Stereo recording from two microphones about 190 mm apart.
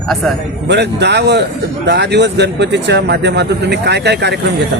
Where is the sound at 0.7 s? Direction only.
65° right (ahead or behind).